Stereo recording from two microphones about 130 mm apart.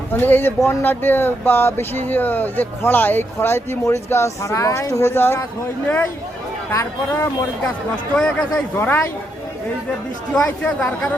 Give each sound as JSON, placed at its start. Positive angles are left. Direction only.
{"t": 0.1, "sound": "speech", "side_deg": 15}
{"t": 6.7, "sound": "speech", "side_deg": 20}
{"t": 8.1, "sound": "speech", "side_deg": 5}
{"t": 8.7, "sound": "speech", "side_deg": 15}
{"t": 10.3, "sound": "speech", "side_deg": 10}